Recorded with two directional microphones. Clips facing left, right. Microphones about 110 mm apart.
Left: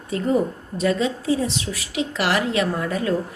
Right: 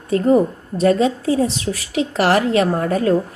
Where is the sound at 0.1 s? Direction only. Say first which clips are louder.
Right 6 dB; 45° right (ahead or behind).